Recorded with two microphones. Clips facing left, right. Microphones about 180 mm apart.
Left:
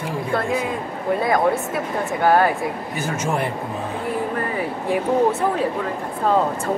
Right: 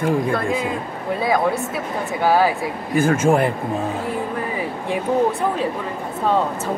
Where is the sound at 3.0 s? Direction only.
50° right (ahead or behind).